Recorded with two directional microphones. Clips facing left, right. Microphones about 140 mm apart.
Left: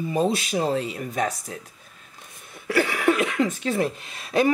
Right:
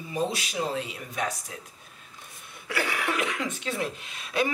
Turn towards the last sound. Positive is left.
turn(degrees=40)  # may be behind; listen again after turning